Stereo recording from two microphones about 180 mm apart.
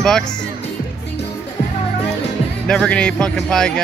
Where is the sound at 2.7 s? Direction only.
5° left (ahead or behind).